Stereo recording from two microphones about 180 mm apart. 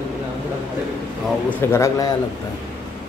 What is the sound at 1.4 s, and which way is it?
Speech, 10° left (ahead or behind).